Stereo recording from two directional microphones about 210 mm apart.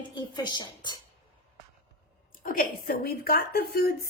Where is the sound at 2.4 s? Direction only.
45° left (ahead or behind).